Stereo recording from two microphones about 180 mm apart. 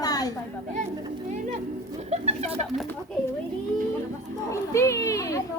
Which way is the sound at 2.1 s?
35° right (ahead or behind).